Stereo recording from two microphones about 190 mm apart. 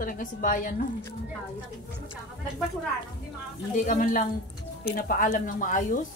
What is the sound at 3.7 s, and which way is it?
Speech, 45° left (ahead or behind).